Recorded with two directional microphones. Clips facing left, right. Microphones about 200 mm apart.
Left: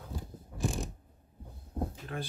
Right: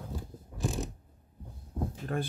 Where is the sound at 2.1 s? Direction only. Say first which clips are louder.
Right 10 dB; 45° right (ahead or behind).